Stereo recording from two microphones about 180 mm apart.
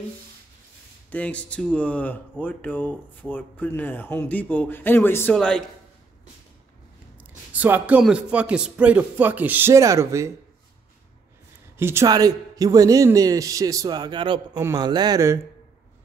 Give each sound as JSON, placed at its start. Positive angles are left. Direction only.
{"t": 1.1, "sound": "speech", "side_deg": 5}
{"t": 7.5, "sound": "speech", "side_deg": -10}
{"t": 11.8, "sound": "a man's voice", "side_deg": -15}